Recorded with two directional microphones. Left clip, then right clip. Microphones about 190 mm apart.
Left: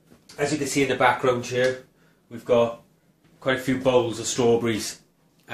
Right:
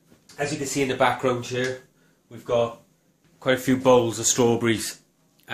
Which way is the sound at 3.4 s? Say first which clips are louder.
Right 2 dB; 55° right (ahead or behind).